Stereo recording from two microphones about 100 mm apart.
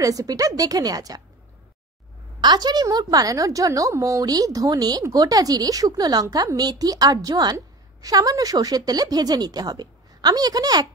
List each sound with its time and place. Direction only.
0.0 s a woman's voice: 35° right (ahead or behind)
2.4 s a woman's voice: 45° right (ahead or behind)